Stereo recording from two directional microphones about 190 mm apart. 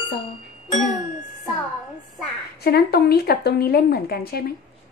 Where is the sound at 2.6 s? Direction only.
55° left (ahead or behind).